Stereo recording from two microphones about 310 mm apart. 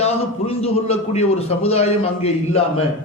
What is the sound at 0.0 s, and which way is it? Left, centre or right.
A man's voice, centre.